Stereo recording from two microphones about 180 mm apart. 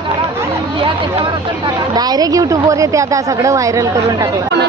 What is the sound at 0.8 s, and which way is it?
Speech, 25° right (ahead or behind).